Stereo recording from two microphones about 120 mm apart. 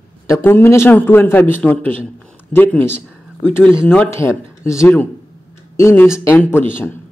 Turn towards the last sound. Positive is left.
turn(degrees=15)  # may be behind; listen again after turning